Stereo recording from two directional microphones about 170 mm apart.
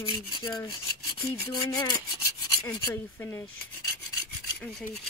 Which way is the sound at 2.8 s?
15° left (ahead or behind).